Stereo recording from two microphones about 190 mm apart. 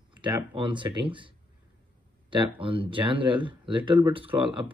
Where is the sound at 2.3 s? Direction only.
25° right (ahead or behind).